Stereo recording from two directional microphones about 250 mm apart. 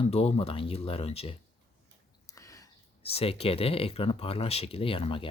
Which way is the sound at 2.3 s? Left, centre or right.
Centre.